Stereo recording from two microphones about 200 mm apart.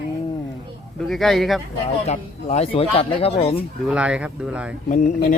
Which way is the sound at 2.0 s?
35° left (ahead or behind).